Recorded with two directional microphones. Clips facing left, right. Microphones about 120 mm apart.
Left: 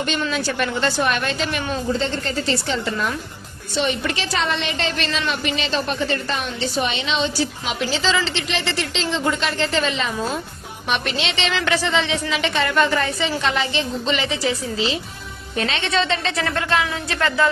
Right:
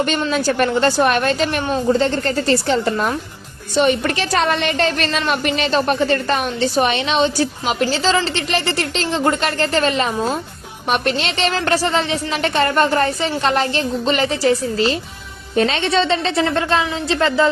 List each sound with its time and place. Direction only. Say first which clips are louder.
0.3 s a woman's voice: right 6 dB; 45° right (ahead or behind); by 17.5 s 25° right (ahead or behind)